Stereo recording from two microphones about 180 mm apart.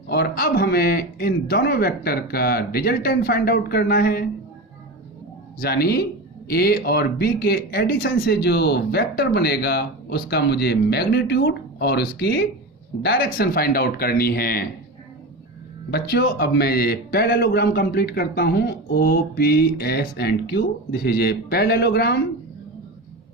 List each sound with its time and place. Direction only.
0.1 s speech: 60° left (ahead or behind)
5.5 s speech: 60° left (ahead or behind)
15.9 s speech: 65° left (ahead or behind)